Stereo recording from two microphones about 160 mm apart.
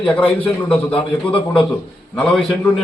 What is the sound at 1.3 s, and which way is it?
Speech, 35° left (ahead or behind).